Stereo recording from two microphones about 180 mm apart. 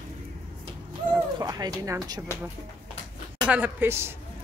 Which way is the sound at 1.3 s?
20° right (ahead or behind).